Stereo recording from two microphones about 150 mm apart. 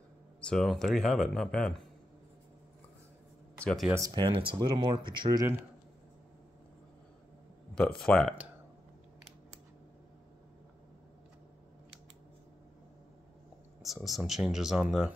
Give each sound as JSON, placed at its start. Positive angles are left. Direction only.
{"t": 0.4, "sound": "speech", "side_deg": 5}
{"t": 3.5, "sound": "a sound", "side_deg": 5}
{"t": 3.9, "sound": "speech", "side_deg": -25}
{"t": 7.7, "sound": "speech", "side_deg": 5}
{"t": 13.8, "sound": "speech", "side_deg": 0}